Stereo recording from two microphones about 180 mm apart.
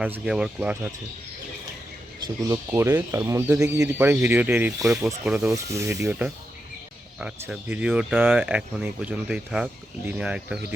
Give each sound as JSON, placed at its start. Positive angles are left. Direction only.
{"t": 0.0, "sound": "speech", "side_deg": -5}
{"t": 2.6, "sound": "speech", "side_deg": -15}
{"t": 5.5, "sound": "speech", "side_deg": -15}
{"t": 7.2, "sound": "speech", "side_deg": -5}